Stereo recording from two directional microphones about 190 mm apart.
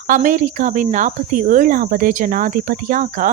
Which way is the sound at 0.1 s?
45° right (ahead or behind).